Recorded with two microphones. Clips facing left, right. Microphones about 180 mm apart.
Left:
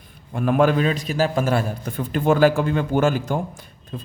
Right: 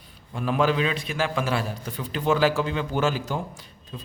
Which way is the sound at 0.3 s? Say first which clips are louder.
Left 5 dB; 50° left (ahead or behind).